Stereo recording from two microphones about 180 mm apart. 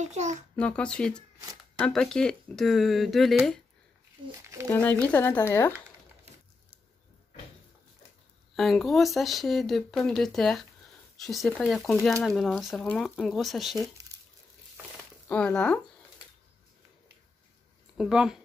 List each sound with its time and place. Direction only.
0.0 s a child's voice: 40° right (ahead or behind)
0.6 s speech: 5° left (ahead or behind)
4.4 s speech: 15° right (ahead or behind)
4.6 s speech: 10° left (ahead or behind)
8.5 s speech: centre (ahead or behind)
15.2 s speech: 5° left (ahead or behind)
17.9 s speech: 5° right (ahead or behind)